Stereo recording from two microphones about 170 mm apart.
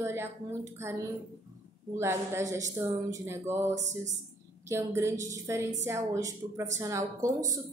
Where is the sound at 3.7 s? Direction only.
45° right (ahead or behind).